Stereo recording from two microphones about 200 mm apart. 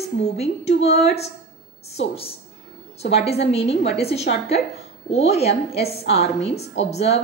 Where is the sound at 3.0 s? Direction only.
30° left (ahead or behind).